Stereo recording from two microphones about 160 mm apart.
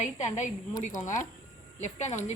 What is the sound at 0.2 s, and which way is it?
Speech, 50° left (ahead or behind).